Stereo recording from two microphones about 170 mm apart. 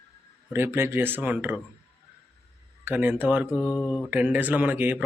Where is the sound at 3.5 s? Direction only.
15° left (ahead or behind).